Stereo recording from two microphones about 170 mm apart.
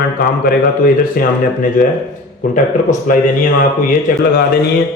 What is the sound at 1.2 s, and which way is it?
Speech, 60° left (ahead or behind).